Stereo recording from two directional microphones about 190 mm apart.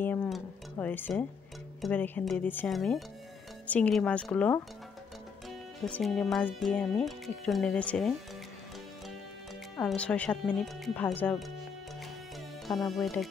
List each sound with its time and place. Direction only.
0.0 s music: 10° left (ahead or behind)
1.8 s speech: 10° left (ahead or behind)
5.9 s speech: 5° left (ahead or behind)
9.8 s speech: 5° left (ahead or behind)
12.6 s speech: centre (ahead or behind)